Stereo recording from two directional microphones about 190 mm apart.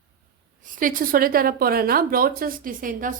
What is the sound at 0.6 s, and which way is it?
Speech, 45° right (ahead or behind).